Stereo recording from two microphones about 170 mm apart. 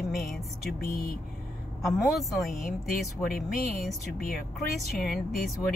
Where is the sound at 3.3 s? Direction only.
60° left (ahead or behind).